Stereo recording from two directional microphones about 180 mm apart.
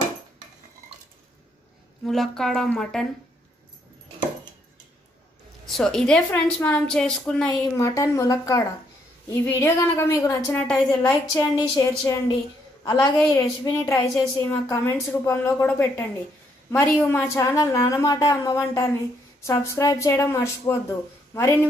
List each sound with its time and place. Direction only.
2.0 s a woman's voice: centre (ahead or behind)
5.7 s a woman's voice: 5° left (ahead or behind)
7.7 s speech: 15° left (ahead or behind)
11.0 s a woman's voice: 20° left (ahead or behind)